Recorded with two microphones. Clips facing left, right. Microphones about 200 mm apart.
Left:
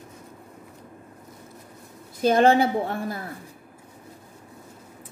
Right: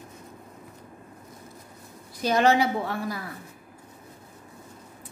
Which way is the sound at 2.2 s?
50° left (ahead or behind).